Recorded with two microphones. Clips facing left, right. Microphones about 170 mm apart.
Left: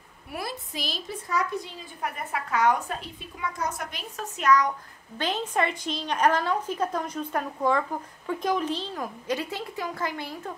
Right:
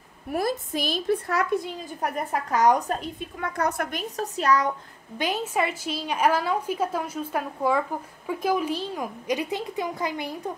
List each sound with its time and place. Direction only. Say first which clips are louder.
0.3 s a woman's voice: right 9 dB; 45° right (ahead or behind)
4.2 s a woman's voice: even; 35° right (ahead or behind)
5.1 s a woman's voice: right 1 dB; 10° right (ahead or behind)